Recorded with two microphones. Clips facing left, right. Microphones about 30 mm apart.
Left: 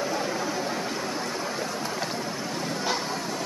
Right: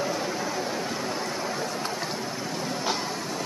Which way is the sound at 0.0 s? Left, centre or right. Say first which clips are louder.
Left 1 dB; centre.